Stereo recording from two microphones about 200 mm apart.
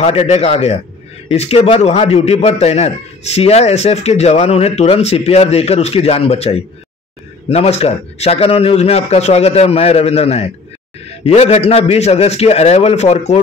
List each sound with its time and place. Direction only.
0.0 s a man's voice: 30° left (ahead or behind)